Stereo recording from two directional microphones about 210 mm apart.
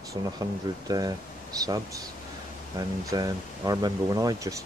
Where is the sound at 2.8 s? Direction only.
20° right (ahead or behind).